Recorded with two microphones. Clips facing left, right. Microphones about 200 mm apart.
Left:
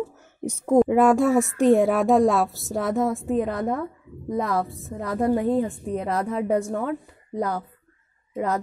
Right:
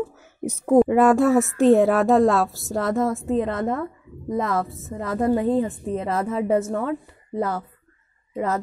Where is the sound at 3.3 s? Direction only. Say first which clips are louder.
Right 2 dB; centre (ahead or behind).